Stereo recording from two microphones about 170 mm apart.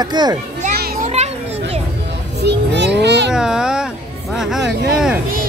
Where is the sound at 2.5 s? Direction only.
90° right.